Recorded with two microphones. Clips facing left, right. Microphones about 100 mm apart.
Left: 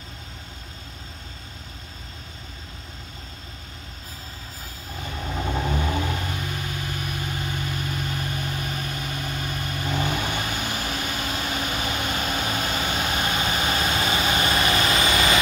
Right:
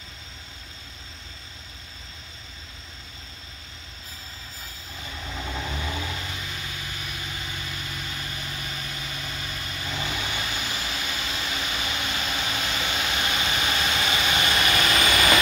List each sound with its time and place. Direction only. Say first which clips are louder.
4.9 s vehicle: left 6 dB; 50° left (ahead or behind); by 15.3 s 25° left (ahead or behind)